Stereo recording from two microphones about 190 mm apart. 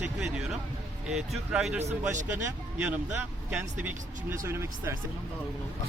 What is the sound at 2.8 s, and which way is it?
Speech, 10° right (ahead or behind).